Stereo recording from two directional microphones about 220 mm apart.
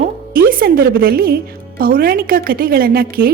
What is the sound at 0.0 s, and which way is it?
Music, 40° right (ahead or behind).